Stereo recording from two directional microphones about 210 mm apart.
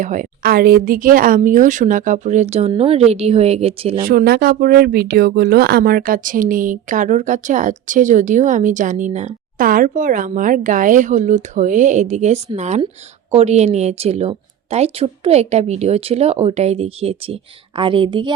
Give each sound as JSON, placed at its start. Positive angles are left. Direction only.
{"t": 0.0, "sound": "speech", "side_deg": -40}
{"t": 4.0, "sound": "a woman's voice", "side_deg": -45}